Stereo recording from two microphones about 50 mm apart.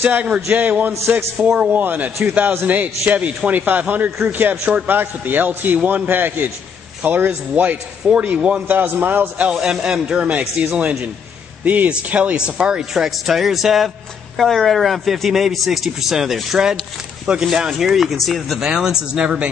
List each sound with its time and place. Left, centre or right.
0.0 s a man's voice: right
8.1 s a man's voice: right
8.6 s a man's voice: right
9.5 s a man's voice: centre
19.1 s a man's voice: right